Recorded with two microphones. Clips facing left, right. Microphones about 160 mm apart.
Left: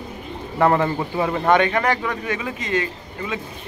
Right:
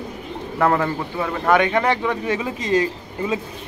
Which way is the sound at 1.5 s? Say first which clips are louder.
Right 2 dB; 15° right (ahead or behind).